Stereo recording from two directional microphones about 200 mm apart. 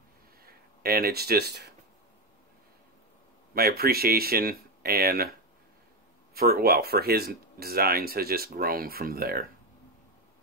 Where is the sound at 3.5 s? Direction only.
50° right (ahead or behind).